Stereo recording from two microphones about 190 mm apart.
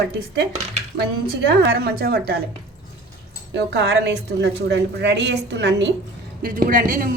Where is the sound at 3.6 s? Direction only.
60° right (ahead or behind).